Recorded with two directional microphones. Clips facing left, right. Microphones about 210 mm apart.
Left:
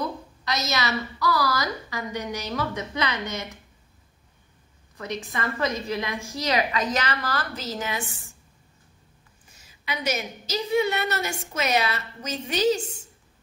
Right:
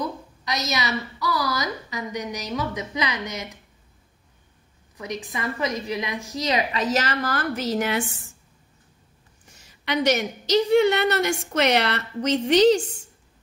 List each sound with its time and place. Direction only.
0.0 s a woman's voice: 15° right (ahead or behind)
4.9 s a woman's voice: 15° right (ahead or behind)
7.0 s a woman's voice: 45° right (ahead or behind); by 8.0 s 65° right (ahead or behind)
9.8 s a woman's voice: 70° right (ahead or behind)